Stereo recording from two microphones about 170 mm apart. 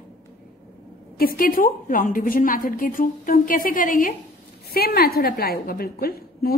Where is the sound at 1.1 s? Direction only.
60° left (ahead or behind).